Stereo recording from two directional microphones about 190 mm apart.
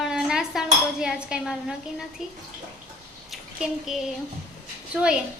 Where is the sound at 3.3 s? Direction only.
Centre (ahead or behind).